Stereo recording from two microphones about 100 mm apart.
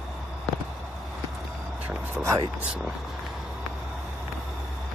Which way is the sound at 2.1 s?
30° right (ahead or behind).